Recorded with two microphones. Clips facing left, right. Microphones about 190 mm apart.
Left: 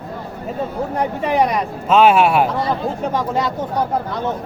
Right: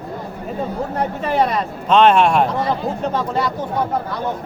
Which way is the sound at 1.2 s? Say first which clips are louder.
Left 1 dB; 15° left (ahead or behind).